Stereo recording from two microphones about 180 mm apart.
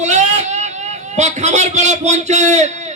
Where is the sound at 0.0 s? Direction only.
40° right (ahead or behind).